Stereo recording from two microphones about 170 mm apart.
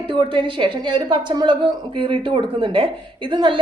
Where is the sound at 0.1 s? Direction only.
30° right (ahead or behind).